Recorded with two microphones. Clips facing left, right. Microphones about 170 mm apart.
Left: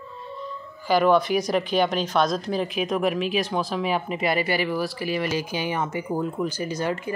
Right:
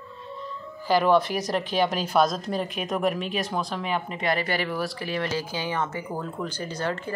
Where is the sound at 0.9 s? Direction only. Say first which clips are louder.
Left 2 dB; centre (ahead or behind).